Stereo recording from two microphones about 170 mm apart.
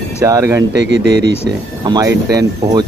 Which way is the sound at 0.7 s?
90° right.